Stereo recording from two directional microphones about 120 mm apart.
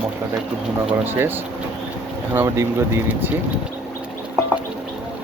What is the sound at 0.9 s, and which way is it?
Speech, 15° right (ahead or behind).